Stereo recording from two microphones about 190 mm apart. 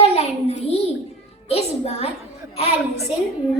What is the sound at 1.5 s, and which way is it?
Music, 30° left (ahead or behind).